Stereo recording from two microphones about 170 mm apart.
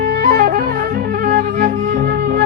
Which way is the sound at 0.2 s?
60° right (ahead or behind).